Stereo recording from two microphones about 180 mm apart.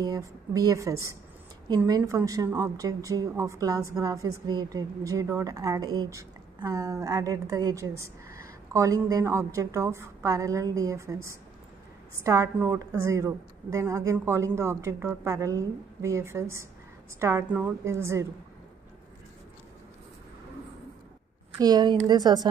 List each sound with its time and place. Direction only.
0.0 s a woman's voice: 20° right (ahead or behind)
21.5 s a woman's voice: 20° right (ahead or behind)